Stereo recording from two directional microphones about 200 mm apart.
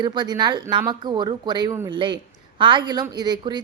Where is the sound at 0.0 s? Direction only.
20° right (ahead or behind).